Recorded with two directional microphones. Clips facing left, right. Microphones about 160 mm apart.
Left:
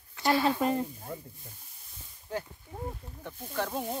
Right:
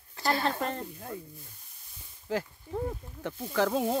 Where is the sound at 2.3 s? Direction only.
90° right.